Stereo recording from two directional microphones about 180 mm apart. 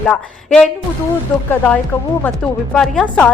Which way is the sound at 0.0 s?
5° left (ahead or behind).